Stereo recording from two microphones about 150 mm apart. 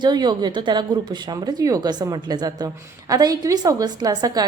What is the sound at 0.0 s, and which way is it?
A woman's voice, 30° right (ahead or behind).